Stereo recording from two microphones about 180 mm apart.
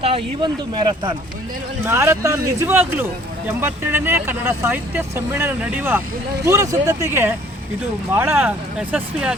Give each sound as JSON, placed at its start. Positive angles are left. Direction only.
{"t": 0.0, "sound": "speech", "side_deg": -30}
{"t": 1.8, "sound": "speech", "side_deg": -15}